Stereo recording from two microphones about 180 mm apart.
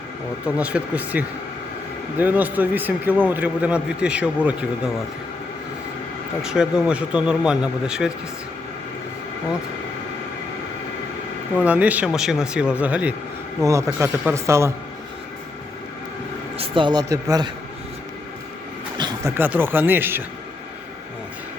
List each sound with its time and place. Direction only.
0.4 s speech: 5° right (ahead or behind)
6.4 s speech: 5° right (ahead or behind)
11.6 s speech: 10° right (ahead or behind)
16.6 s speech: 25° right (ahead or behind)
18.9 s a sound: 25° right (ahead or behind)
19.4 s speech: 10° right (ahead or behind)